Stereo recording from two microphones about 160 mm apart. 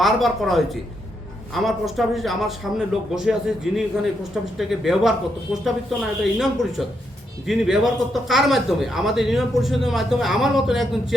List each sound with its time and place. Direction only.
0.0 s a man's voice: centre (ahead or behind)